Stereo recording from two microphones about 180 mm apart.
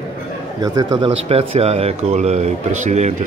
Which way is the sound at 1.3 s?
35° right (ahead or behind).